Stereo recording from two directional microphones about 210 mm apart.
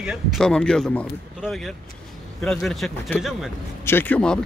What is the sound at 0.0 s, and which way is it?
Speech, centre (ahead or behind).